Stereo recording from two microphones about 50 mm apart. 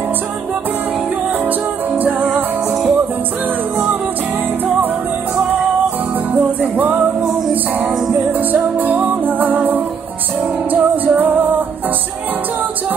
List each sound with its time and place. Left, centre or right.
2.0 s music: right
6.3 s music: right